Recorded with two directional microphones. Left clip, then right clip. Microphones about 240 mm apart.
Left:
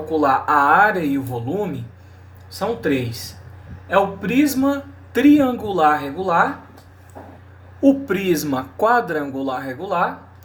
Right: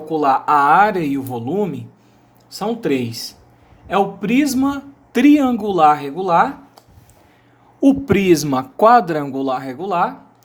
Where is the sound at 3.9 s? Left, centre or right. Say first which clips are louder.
Even; right.